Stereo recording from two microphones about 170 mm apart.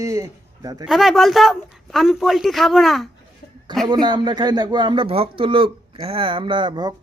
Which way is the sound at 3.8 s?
25° right (ahead or behind).